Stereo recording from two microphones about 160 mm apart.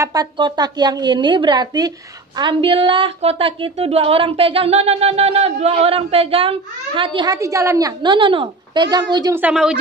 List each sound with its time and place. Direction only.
0.0 s a woman's voice: 20° right (ahead or behind)
7.3 s a woman's voice: 20° right (ahead or behind)
9.3 s speech: 5° right (ahead or behind)